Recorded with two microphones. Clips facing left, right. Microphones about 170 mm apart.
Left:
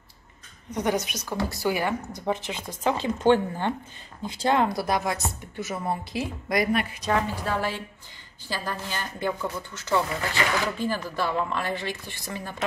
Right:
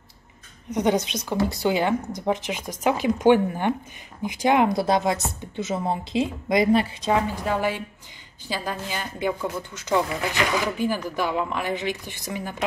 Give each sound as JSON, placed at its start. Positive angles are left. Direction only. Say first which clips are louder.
{"t": 0.7, "sound": "a woman's voice", "louder": "right 4 dB", "side_deg": -20}